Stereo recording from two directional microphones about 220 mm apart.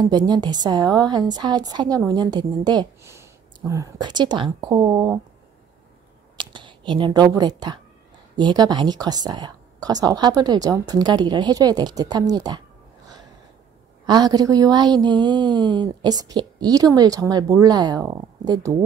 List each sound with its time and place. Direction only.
0.0 s a woman's voice: 20° right (ahead or behind)
6.3 s a woman's voice: 20° right (ahead or behind)
14.0 s a woman's voice: 20° right (ahead or behind)